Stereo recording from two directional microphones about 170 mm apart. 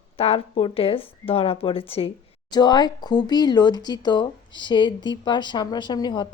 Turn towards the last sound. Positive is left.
turn(degrees=25)  # may be behind; listen again after turning